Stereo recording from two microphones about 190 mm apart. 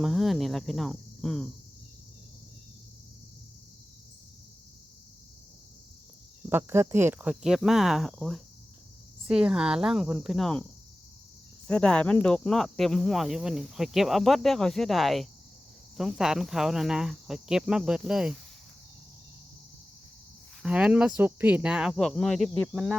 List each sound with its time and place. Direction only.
0.0 s speech: centre (ahead or behind)
6.5 s speech: 10° right (ahead or behind); by 10.7 s 5° left (ahead or behind)
11.7 s speech: 5° left (ahead or behind)
20.6 s speech: 5° right (ahead or behind)